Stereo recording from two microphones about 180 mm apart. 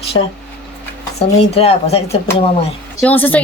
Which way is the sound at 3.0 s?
10° left (ahead or behind).